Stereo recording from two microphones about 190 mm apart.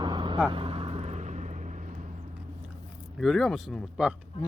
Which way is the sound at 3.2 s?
Centre (ahead or behind).